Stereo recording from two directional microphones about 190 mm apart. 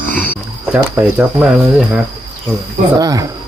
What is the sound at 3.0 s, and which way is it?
Speech, 20° right (ahead or behind).